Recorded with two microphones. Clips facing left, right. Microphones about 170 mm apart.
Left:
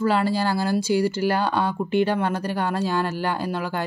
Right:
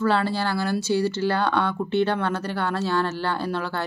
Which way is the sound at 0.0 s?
10° left (ahead or behind).